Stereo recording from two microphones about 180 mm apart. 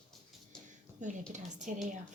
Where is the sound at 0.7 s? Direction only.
45° right (ahead or behind).